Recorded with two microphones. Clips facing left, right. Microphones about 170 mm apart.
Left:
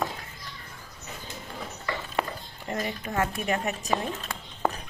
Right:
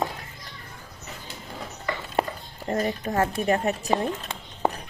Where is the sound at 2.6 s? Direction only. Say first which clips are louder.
Right 6 dB; 40° right (ahead or behind).